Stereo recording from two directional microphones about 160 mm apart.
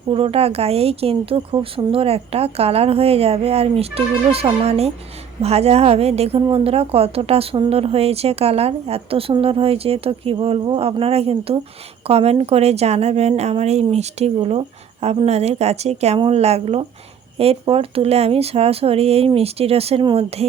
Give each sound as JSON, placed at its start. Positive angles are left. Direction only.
{"t": 0.1, "sound": "a woman's voice", "side_deg": -35}